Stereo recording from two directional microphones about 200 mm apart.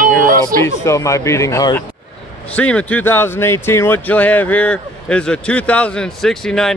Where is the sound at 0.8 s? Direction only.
15° left (ahead or behind).